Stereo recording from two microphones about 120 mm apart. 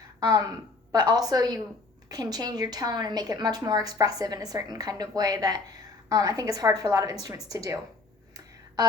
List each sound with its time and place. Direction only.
0.9 s a woman's voice: 30° right (ahead or behind)